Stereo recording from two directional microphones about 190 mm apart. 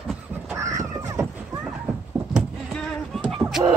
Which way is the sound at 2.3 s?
Centre (ahead or behind).